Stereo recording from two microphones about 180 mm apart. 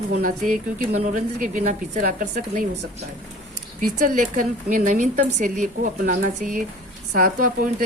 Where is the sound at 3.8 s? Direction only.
50° right (ahead or behind).